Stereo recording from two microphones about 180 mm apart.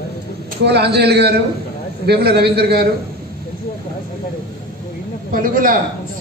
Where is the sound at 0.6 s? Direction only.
65° right (ahead or behind).